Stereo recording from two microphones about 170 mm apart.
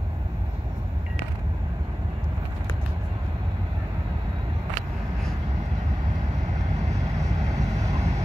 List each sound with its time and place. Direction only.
7.2 s vehicle: 20° right (ahead or behind)